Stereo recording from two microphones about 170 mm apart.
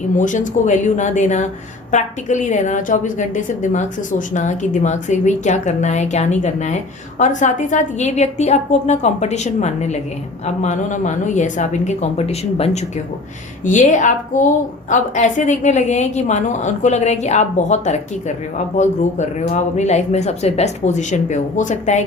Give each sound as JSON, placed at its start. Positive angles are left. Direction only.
{"t": 0.2, "sound": "a woman's voice", "side_deg": 45}